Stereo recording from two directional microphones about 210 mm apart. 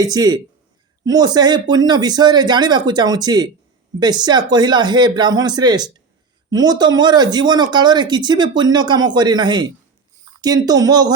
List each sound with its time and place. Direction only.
0.0 s speech: 20° right (ahead or behind)